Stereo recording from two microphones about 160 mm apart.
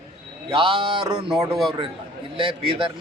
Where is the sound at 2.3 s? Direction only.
35° right (ahead or behind).